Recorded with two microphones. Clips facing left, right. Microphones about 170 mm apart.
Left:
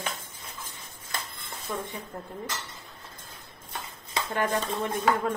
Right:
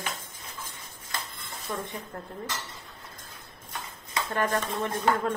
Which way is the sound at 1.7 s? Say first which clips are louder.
Even; 10° right (ahead or behind).